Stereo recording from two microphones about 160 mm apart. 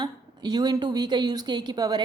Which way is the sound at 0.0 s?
25° right (ahead or behind).